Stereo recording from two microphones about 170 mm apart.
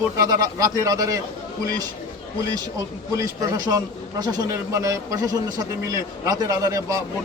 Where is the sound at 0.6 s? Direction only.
20° right (ahead or behind).